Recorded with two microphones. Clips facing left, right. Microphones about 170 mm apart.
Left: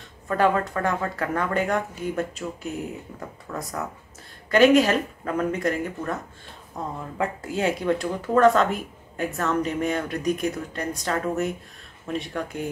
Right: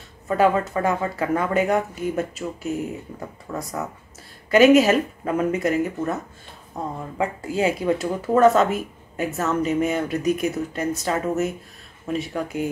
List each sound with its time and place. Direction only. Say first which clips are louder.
0.3 s speech: right 3 dB; 5° right (ahead or behind)
7.2 s speech: right 3 dB; centre (ahead or behind)